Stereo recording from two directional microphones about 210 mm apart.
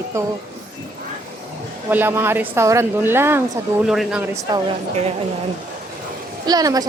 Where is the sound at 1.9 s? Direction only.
10° right (ahead or behind).